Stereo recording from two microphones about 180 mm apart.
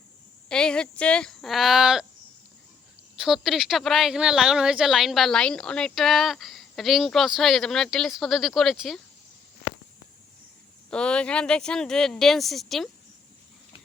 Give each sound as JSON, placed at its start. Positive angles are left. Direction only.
{"t": 0.4, "sound": "speech", "side_deg": 5}
{"t": 3.2, "sound": "a woman's voice", "side_deg": 0}
{"t": 10.9, "sound": "a woman's voice", "side_deg": 5}